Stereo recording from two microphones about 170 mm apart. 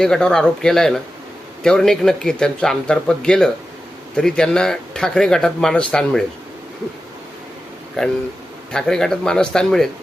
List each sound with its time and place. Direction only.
0.0 s speech: 5° left (ahead or behind)
8.0 s speech: 5° left (ahead or behind)